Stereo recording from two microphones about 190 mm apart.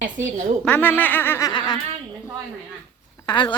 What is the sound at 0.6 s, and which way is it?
Speech, 10° left (ahead or behind).